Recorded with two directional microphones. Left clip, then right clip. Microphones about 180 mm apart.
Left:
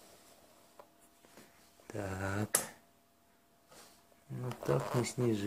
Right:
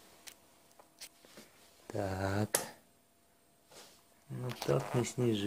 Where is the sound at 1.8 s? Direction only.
10° right (ahead or behind).